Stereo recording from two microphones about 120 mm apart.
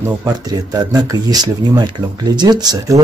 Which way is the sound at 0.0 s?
30° right (ahead or behind).